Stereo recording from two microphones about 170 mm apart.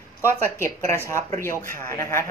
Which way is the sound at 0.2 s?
15° left (ahead or behind).